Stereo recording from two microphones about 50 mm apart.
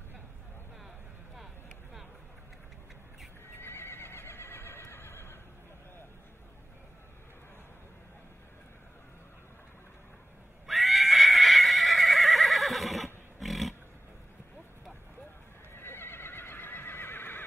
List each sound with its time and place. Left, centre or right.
3.5 s neigh: left
10.7 s neigh: centre
15.7 s neigh: left